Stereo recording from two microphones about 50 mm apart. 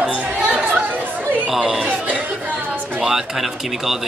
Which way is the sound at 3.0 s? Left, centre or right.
Centre.